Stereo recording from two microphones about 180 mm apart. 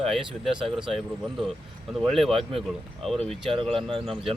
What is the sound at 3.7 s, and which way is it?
Speech, centre (ahead or behind).